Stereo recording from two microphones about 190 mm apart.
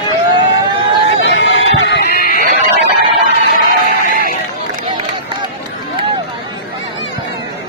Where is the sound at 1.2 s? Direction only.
75° left (ahead or behind); by 2.4 s 55° left (ahead or behind).